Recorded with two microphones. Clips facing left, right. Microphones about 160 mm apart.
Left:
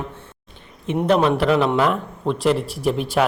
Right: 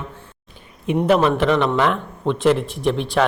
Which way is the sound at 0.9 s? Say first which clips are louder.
Right 1 dB; centre (ahead or behind).